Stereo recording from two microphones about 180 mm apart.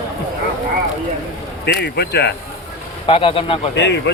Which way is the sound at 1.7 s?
65° left (ahead or behind).